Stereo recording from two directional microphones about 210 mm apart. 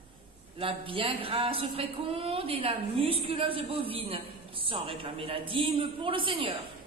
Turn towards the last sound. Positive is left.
turn(degrees=-25)  # may be behind; listen again after turning